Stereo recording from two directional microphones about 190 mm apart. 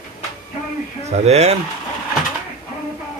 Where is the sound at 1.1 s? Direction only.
35° right (ahead or behind).